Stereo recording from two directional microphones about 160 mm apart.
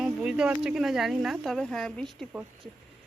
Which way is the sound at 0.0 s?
5° right (ahead or behind).